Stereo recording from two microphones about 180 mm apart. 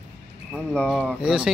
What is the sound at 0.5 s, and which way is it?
Speech, 5° left (ahead or behind).